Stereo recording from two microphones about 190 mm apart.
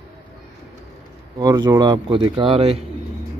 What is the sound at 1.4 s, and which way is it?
Speech, 20° right (ahead or behind).